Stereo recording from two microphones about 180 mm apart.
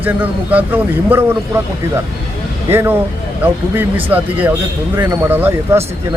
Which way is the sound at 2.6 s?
15° right (ahead or behind).